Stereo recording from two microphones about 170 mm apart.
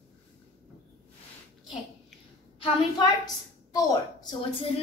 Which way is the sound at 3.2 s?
20° left (ahead or behind).